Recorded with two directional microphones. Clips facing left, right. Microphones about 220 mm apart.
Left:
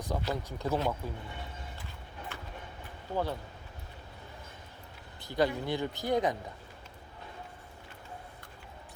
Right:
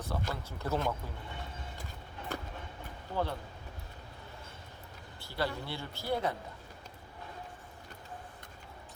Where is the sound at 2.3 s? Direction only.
40° right (ahead or behind).